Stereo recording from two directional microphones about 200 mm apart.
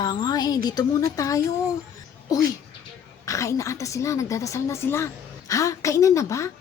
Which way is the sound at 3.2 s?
15° left (ahead or behind).